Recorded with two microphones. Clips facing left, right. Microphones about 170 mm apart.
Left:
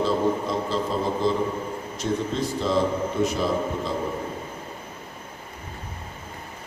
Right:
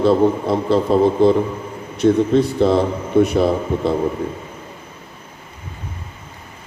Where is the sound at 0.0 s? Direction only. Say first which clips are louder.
Right 8 dB; 65° right (ahead or behind).